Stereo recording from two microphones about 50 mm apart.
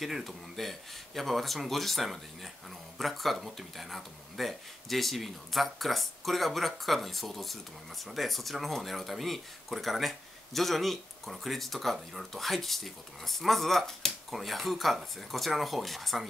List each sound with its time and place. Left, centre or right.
0.0 s speech: centre